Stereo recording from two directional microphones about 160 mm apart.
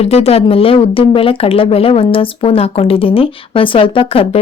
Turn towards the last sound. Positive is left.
turn(degrees=35)  # may be behind; listen again after turning